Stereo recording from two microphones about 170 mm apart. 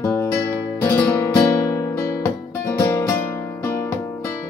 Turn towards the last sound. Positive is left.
turn(degrees=15)  # may be behind; listen again after turning